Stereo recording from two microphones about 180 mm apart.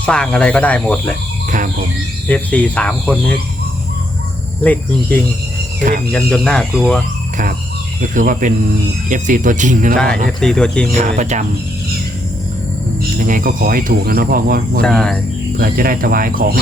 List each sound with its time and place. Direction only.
0.0 s speech: 5° left (ahead or behind)
1.5 s speech: 45° right (ahead or behind)
2.2 s speech: 5° left (ahead or behind)
4.6 s speech: 10° left (ahead or behind)
8.1 s speech: 45° right (ahead or behind)
10.2 s speech: 5° left (ahead or behind)
10.9 s speech: 40° right (ahead or behind)
13.1 s speech: 50° right (ahead or behind)
14.8 s speech: 5° left (ahead or behind)
15.5 s speech: 55° right (ahead or behind)